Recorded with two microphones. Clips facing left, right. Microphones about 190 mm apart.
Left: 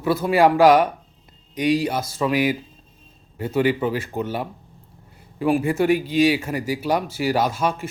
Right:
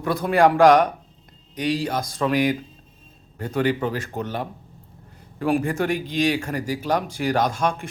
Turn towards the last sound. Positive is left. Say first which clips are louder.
# left 1 dB
turn(degrees=5)  # may be behind; listen again after turning